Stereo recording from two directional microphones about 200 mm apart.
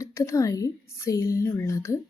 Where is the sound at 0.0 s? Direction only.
15° left (ahead or behind).